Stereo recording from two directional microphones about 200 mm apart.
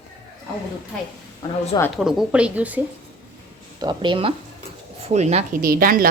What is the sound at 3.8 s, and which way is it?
A woman's voice, 20° right (ahead or behind).